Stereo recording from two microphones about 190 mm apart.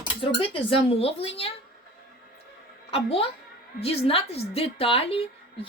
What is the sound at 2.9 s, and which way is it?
Speech, 30° left (ahead or behind).